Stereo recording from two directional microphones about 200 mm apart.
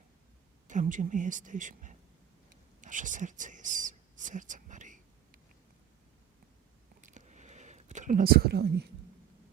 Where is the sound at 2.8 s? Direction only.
40° right (ahead or behind).